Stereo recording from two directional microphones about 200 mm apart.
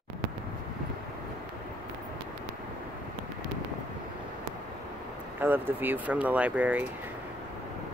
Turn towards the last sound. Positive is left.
turn(degrees=-10)  # may be behind; listen again after turning